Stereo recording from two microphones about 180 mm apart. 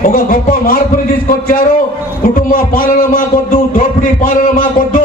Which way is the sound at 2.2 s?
50° left (ahead or behind).